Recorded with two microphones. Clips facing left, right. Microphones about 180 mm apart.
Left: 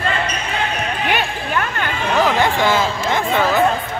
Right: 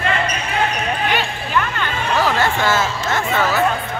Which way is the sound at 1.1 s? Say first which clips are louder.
Even; 50° left (ahead or behind).